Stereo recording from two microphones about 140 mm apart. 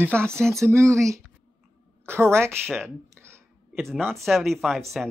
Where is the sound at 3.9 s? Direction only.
Centre (ahead or behind).